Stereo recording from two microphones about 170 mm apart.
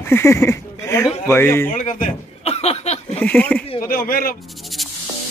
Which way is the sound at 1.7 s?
45° left (ahead or behind).